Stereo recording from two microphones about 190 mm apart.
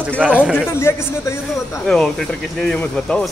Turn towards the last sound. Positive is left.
turn(degrees=5)  # may be behind; listen again after turning